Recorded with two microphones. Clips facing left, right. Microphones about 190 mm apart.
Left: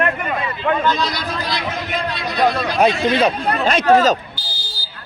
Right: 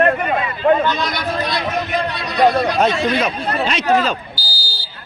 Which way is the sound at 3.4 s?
50° left (ahead or behind).